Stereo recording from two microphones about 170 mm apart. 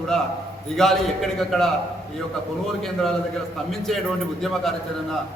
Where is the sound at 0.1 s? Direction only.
Centre (ahead or behind).